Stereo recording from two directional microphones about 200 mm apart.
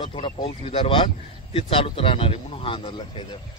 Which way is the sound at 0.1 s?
30° left (ahead or behind).